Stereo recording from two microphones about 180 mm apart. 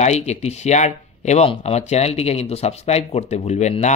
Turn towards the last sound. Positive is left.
turn(degrees=40)  # may be behind; listen again after turning